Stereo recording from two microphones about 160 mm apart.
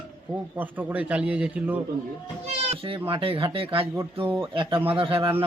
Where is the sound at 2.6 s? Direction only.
35° right (ahead or behind).